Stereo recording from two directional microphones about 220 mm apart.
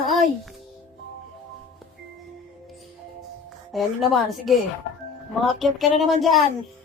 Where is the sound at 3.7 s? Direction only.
Centre (ahead or behind).